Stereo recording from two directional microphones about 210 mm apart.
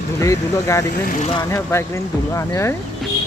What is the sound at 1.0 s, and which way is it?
Speech, 35° left (ahead or behind).